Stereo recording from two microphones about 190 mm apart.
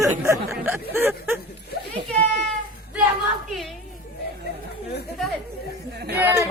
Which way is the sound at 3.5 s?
Centre (ahead or behind).